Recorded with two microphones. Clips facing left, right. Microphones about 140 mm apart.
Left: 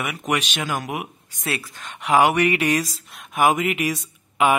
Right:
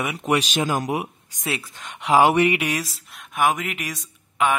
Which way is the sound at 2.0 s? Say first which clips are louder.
Right 1 dB; 25° right (ahead or behind).